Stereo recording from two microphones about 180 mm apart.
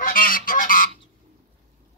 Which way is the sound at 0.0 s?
50° left (ahead or behind).